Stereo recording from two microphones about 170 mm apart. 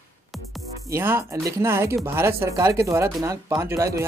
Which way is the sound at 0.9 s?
15° right (ahead or behind).